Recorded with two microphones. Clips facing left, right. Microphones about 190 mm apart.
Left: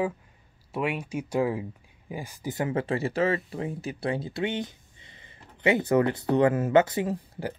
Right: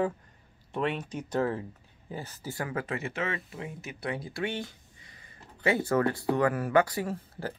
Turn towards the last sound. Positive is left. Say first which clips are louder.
# left 4 dB
turn(degrees=15)  # may be behind; listen again after turning